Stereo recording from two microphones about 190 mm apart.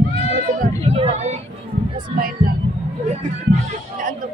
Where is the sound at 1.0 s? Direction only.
35° right (ahead or behind).